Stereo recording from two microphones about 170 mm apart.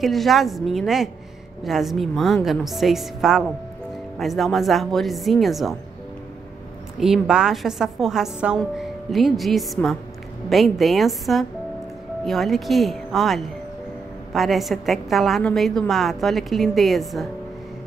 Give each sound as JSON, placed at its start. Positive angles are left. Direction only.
{"t": 0.0, "sound": "a woman's voice", "side_deg": 0}
{"t": 7.0, "sound": "a woman's voice", "side_deg": -5}